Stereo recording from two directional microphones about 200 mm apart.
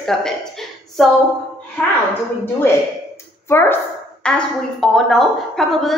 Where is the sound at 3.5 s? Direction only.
10° left (ahead or behind).